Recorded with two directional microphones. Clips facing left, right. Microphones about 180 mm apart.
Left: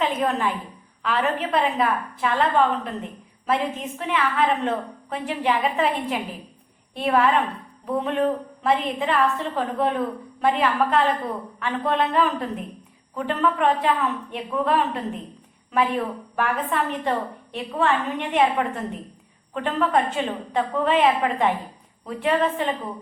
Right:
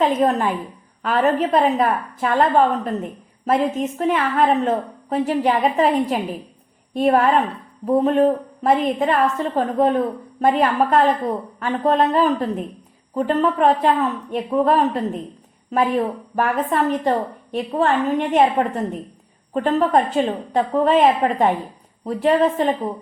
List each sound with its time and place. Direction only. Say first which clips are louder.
0.0 s a woman's voice: right 5 dB; 45° right (ahead or behind)